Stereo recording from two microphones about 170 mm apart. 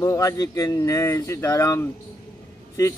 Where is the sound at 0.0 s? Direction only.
20° left (ahead or behind).